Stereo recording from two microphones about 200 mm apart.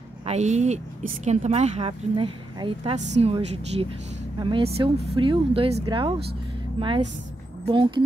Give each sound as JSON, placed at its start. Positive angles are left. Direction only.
{"t": 0.3, "sound": "speech", "side_deg": -35}